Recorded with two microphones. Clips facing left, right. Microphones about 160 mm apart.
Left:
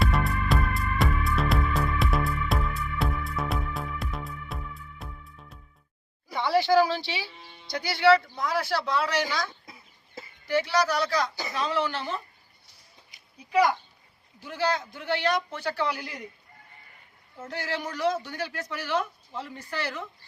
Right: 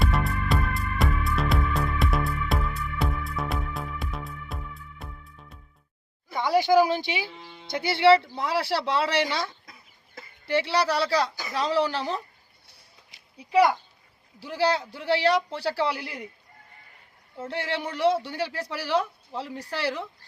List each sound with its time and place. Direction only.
0.0 s music: centre (ahead or behind)
6.3 s speech: 10° right (ahead or behind)
7.4 s music: 90° right
7.7 s speech: 25° right (ahead or behind)
10.7 s speech: 30° right (ahead or behind)
13.5 s speech: 30° right (ahead or behind)
17.3 s speech: 30° right (ahead or behind)